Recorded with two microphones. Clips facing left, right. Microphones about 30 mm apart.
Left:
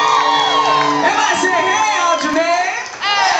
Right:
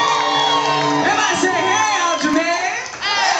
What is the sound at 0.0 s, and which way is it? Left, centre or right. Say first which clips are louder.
Music: left 3 dB; centre.